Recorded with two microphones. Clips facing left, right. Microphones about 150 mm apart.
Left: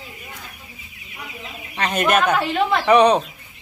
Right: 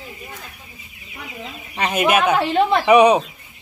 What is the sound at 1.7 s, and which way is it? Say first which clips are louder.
Speech: right 1 dB; 10° right (ahead or behind).